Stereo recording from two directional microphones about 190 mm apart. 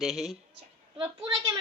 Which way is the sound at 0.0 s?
Centre (ahead or behind).